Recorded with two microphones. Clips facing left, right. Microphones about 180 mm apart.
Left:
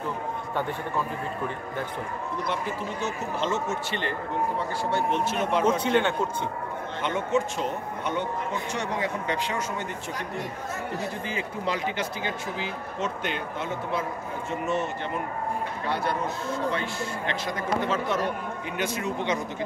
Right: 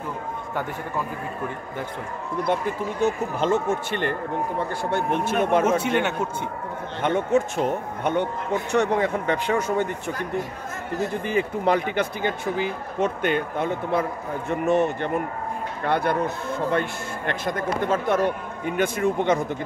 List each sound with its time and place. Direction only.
2.4 s speech: 55° right (ahead or behind)
5.8 s speech: 10° right (ahead or behind)
7.0 s speech: 55° right (ahead or behind)